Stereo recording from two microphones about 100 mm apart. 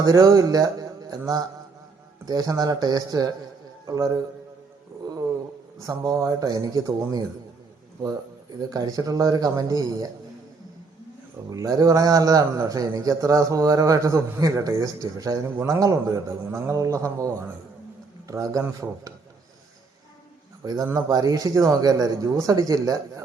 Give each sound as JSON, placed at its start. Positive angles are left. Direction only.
{"t": 0.0, "sound": "a man's voice", "side_deg": -40}
{"t": 6.0, "sound": "a man's voice", "side_deg": -35}
{"t": 8.7, "sound": "a man's voice", "side_deg": -40}
{"t": 11.5, "sound": "a man's voice", "side_deg": -35}
{"t": 20.8, "sound": "a man's voice", "side_deg": -35}